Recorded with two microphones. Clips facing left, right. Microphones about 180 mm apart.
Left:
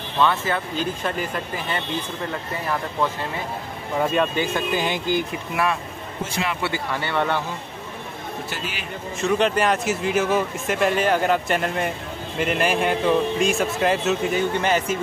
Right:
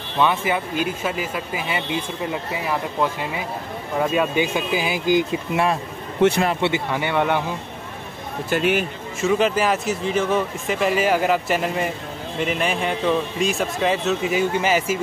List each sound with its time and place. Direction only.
0.2 s speech: 15° right (ahead or behind)
6.2 s speech: 75° right (ahead or behind)
6.6 s speech: 15° right (ahead or behind)
8.5 s speech: 55° right (ahead or behind)
9.2 s speech: 5° right (ahead or behind)